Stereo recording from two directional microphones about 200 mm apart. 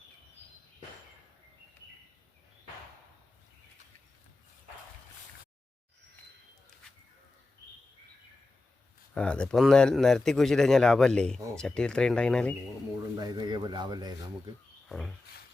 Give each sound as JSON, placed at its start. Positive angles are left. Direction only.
{"t": 9.1, "sound": "speech", "side_deg": 5}
{"t": 13.1, "sound": "speech", "side_deg": -20}
{"t": 14.8, "sound": "a sound", "side_deg": 0}